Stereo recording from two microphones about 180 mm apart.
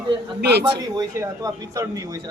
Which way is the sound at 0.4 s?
65° right (ahead or behind).